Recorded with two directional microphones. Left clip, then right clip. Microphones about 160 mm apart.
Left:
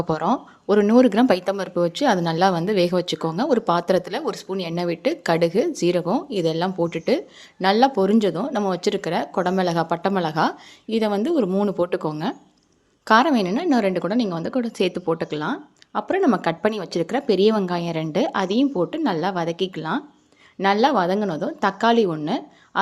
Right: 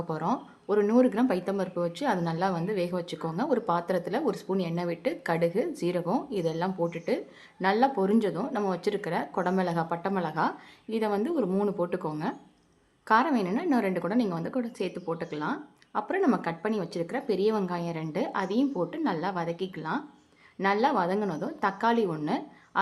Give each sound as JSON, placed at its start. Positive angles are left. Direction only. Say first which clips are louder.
{"t": 0.1, "sound": "speech", "louder": "left 7 dB", "side_deg": 40}
{"t": 11.8, "sound": "speech", "louder": "left 7 dB", "side_deg": 35}